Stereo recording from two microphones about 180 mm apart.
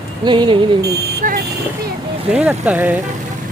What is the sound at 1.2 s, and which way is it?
Speech, 45° right (ahead or behind).